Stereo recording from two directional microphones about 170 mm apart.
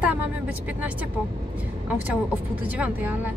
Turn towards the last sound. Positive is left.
turn(degrees=-10)  # may be behind; listen again after turning